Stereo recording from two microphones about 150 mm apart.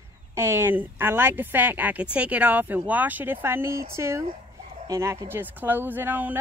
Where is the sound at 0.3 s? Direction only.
15° right (ahead or behind).